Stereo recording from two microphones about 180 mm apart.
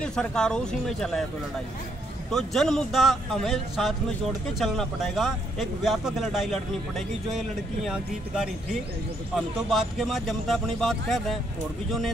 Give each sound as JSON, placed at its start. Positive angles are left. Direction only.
{"t": 0.0, "sound": "speech", "side_deg": 5}
{"t": 2.3, "sound": "speech", "side_deg": 0}